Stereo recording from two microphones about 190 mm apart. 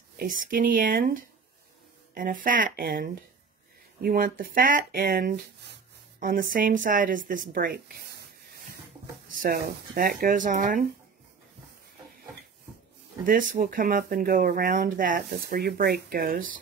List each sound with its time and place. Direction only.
0.2 s speech: 45° right (ahead or behind)
9.3 s speech: 50° right (ahead or behind)
13.2 s speech: 45° right (ahead or behind)